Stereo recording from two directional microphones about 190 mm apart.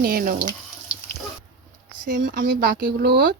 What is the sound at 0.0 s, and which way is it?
Speech, 50° right (ahead or behind).